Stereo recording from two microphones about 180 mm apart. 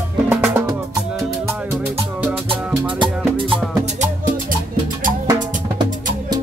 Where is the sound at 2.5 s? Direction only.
25° right (ahead or behind).